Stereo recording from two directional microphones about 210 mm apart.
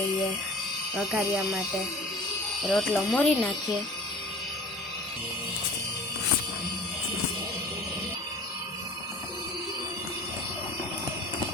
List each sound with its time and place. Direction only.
0.9 s speech: 5° right (ahead or behind)
2.6 s speech: 5° left (ahead or behind)